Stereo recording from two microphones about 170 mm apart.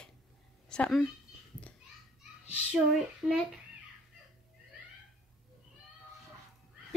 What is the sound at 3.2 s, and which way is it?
Speech, centre (ahead or behind).